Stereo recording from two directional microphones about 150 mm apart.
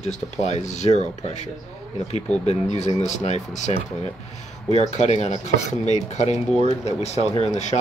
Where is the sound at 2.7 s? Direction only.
50° left (ahead or behind).